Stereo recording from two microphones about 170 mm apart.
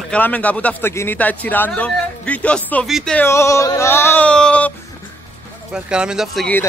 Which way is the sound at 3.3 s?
15° left (ahead or behind).